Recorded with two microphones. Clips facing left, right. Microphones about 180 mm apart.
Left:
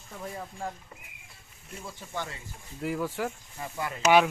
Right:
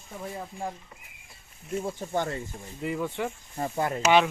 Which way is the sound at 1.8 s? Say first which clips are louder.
Right 7 dB; 45° right (ahead or behind).